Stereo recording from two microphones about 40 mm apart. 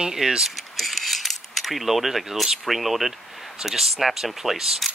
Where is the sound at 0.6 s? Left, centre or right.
Centre.